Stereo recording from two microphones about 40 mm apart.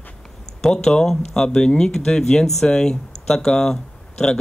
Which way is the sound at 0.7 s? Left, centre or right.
Centre.